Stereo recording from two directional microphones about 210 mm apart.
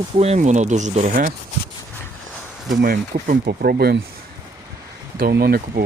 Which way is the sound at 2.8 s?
40° right (ahead or behind).